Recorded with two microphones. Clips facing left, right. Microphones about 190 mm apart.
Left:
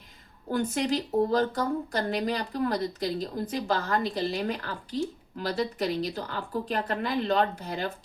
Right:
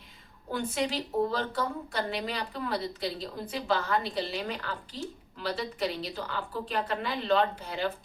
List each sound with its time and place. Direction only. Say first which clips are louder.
0.5 s a woman's voice: left 4 dB; 45° left (ahead or behind)